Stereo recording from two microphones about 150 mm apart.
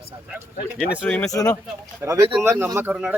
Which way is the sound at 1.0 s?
10° left (ahead or behind).